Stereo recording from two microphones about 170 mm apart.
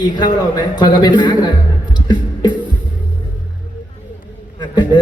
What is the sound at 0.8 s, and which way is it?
Speech, 25° left (ahead or behind).